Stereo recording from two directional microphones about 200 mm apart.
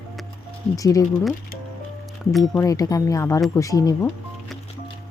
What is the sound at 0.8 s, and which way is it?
Speech, 15° left (ahead or behind).